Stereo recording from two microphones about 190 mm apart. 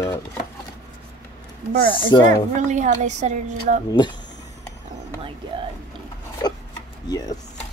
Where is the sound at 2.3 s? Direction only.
40° right (ahead or behind).